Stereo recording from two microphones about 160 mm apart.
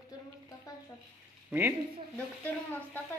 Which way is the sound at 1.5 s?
15° right (ahead or behind).